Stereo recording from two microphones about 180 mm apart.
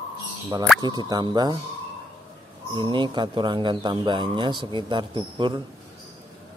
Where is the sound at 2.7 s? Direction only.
25° right (ahead or behind).